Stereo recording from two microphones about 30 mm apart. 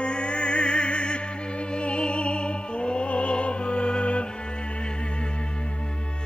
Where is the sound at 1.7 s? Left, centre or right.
Left.